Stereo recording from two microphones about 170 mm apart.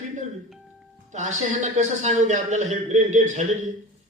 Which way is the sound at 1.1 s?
45° right (ahead or behind).